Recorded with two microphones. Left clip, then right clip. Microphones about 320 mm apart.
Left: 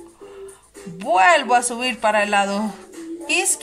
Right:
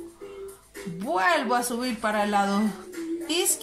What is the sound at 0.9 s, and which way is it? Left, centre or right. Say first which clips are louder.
Speech: left 9 dB; left.